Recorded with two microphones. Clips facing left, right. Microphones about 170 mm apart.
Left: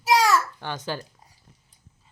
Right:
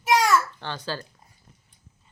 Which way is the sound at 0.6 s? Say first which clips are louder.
Left 1 dB; 15° left (ahead or behind).